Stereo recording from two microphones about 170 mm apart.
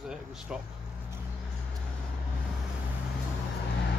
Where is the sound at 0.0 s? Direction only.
5° right (ahead or behind).